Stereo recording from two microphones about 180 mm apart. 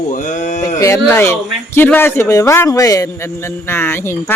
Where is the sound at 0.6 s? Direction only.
15° left (ahead or behind).